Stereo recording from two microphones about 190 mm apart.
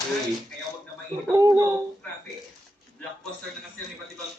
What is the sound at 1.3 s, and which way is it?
Speech, 20° right (ahead or behind).